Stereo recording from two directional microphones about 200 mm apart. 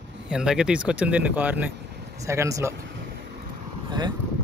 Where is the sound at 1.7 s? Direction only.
55° right (ahead or behind).